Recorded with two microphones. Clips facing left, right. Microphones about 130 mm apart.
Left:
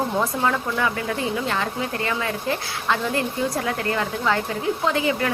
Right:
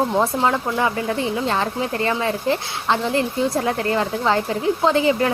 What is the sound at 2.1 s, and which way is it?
Speech, 30° right (ahead or behind).